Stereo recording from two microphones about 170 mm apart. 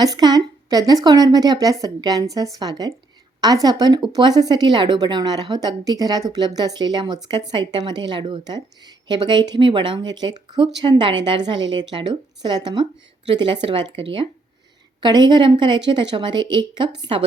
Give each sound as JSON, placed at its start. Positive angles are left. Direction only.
{"t": 0.0, "sound": "speech", "side_deg": -25}
{"t": 15.0, "sound": "speech", "side_deg": -25}